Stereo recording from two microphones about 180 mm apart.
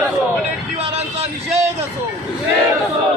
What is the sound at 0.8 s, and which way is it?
Vehicle, 35° right (ahead or behind).